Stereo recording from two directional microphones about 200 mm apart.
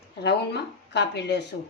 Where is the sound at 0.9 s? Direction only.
60° left (ahead or behind).